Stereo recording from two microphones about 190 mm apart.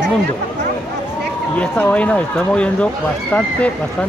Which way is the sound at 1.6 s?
5° left (ahead or behind).